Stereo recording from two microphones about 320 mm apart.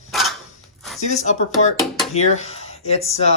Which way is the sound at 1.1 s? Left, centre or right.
Left.